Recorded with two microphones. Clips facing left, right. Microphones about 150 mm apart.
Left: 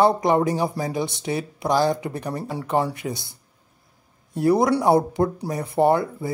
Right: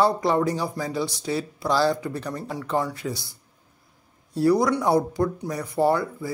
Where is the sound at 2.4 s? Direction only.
30° left (ahead or behind).